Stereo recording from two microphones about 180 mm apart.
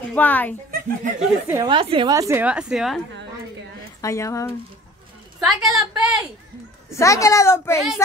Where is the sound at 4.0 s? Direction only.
15° left (ahead or behind).